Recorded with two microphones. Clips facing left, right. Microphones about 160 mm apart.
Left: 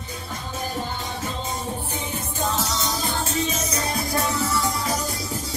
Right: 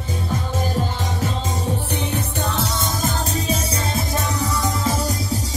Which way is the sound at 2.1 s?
65° right (ahead or behind).